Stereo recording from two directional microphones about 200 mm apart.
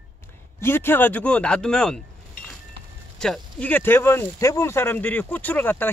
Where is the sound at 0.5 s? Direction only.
10° left (ahead or behind).